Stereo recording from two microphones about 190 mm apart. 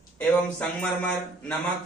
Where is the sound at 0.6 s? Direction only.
5° left (ahead or behind).